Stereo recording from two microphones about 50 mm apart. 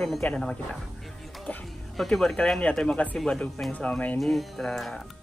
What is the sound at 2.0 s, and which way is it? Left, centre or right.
Speech, centre.